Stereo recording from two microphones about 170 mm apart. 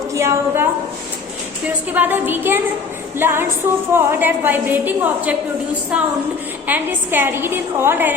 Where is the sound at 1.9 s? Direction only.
10° right (ahead or behind).